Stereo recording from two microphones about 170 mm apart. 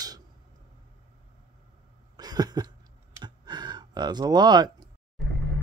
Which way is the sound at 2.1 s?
25° right (ahead or behind).